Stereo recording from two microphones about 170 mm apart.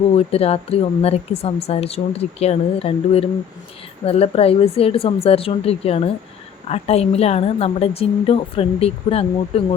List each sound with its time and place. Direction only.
0.1 s speech: 35° left (ahead or behind)